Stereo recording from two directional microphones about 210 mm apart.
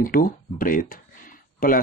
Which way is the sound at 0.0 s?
40° left (ahead or behind).